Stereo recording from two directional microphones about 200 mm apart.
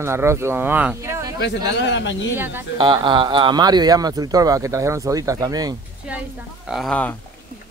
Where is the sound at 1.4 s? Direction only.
60° left (ahead or behind).